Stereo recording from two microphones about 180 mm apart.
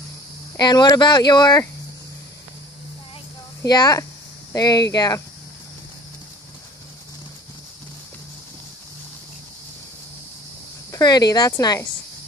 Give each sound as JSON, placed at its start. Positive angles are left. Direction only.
{"t": 0.6, "sound": "speech", "side_deg": 25}
{"t": 3.6, "sound": "speech", "side_deg": 20}
{"t": 10.9, "sound": "speech", "side_deg": 20}